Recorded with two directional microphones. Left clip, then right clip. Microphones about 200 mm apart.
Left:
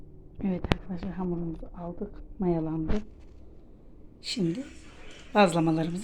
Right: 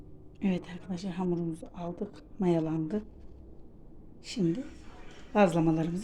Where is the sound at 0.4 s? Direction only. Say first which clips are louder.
Left 4 dB; 10° right (ahead or behind).